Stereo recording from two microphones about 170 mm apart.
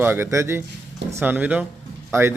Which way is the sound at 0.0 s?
15° right (ahead or behind).